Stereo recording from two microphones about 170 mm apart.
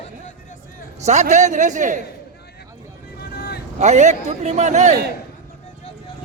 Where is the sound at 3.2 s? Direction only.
75° left (ahead or behind).